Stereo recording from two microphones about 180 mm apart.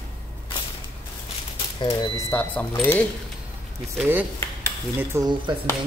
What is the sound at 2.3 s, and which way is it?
Speech, 10° left (ahead or behind).